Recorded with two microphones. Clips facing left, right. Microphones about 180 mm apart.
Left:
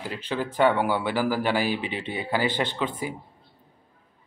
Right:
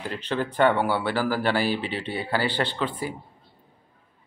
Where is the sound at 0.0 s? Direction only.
10° left (ahead or behind).